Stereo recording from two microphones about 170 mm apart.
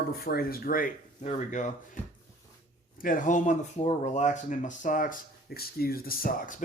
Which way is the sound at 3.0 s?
55° left (ahead or behind).